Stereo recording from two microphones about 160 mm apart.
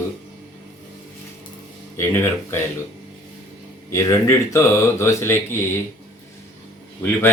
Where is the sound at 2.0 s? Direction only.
15° left (ahead or behind).